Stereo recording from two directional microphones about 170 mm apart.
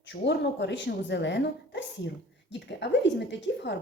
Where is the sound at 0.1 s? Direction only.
90° left.